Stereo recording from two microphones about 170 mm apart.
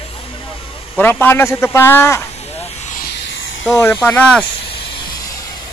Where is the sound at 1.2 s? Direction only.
15° left (ahead or behind).